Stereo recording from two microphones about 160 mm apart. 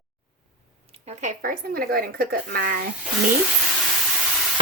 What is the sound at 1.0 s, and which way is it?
Speech, 50° right (ahead or behind).